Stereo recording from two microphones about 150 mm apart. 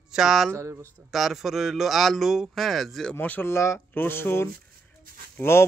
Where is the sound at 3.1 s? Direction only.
15° left (ahead or behind).